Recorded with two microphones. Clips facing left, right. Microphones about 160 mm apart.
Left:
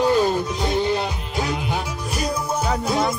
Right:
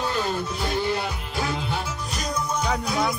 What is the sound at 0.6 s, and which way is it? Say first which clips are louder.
Music: left 2 dB; 20° left (ahead or behind).